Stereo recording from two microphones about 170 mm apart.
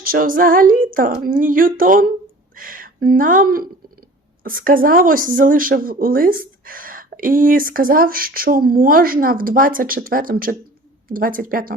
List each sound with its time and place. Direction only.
0.0 s speech: 55° right (ahead or behind)